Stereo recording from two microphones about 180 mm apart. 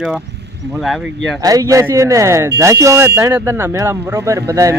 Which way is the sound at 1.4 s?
20° right (ahead or behind).